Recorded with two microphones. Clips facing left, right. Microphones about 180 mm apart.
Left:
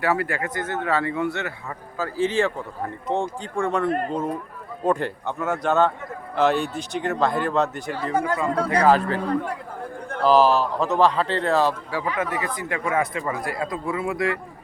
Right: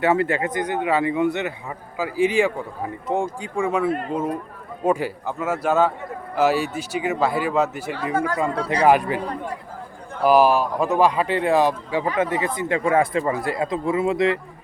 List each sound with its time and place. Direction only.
0.0 s speech: 25° right (ahead or behind); by 8.1 s 5° right (ahead or behind)
8.1 s speech: 20° left (ahead or behind)
8.5 s speech: 50° left (ahead or behind)
8.8 s speech: 15° right (ahead or behind)
10.2 s speech: 10° right (ahead or behind)
12.0 s speech: 30° right (ahead or behind)